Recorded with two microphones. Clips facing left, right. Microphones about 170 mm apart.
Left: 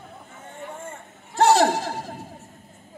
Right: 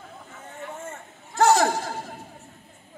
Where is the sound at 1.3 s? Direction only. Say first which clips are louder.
Left 2 dB; 30° left (ahead or behind).